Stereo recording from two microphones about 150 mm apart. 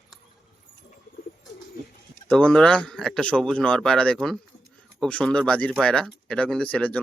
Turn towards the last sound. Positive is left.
turn(degrees=10)  # may be behind; listen again after turning